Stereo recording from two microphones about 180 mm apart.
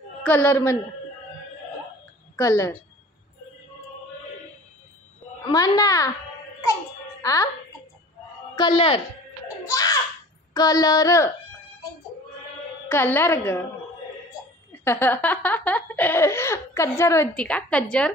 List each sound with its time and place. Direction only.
0.2 s a woman's voice: 10° left (ahead or behind)
2.3 s a woman's voice: 15° left (ahead or behind)
5.5 s female singing: 20° left (ahead or behind)
6.6 s music: 20° left (ahead or behind)
8.5 s female singing: 30° left (ahead or behind)
9.7 s a child's voice: 20° left (ahead or behind)
10.5 s female singing: 20° left (ahead or behind)
12.8 s a woman's voice: 10° left (ahead or behind)
14.7 s a woman's voice: 10° left (ahead or behind)